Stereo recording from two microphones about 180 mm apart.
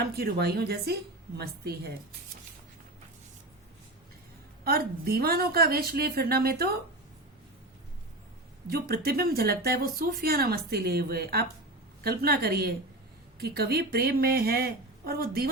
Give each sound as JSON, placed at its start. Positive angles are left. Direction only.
{"t": 0.2, "sound": "speech", "side_deg": -60}
{"t": 4.6, "sound": "speech", "side_deg": -60}
{"t": 8.6, "sound": "speech", "side_deg": -60}